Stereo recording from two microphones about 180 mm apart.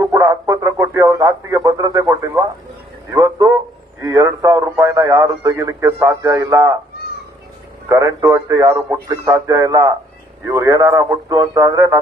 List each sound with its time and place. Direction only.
0.0 s speech: 20° right (ahead or behind)
3.1 s a sound: 20° right (ahead or behind)
4.0 s a man's voice: 20° right (ahead or behind)
7.9 s a man's voice: 15° right (ahead or behind)